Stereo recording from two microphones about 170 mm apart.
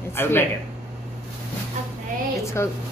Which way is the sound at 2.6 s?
15° left (ahead or behind).